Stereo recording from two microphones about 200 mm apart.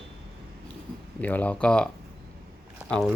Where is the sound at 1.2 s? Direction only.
5° left (ahead or behind).